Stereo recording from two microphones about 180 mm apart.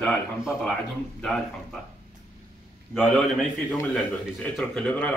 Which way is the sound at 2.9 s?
Centre (ahead or behind).